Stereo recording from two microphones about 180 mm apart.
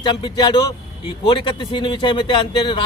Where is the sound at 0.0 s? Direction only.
25° left (ahead or behind).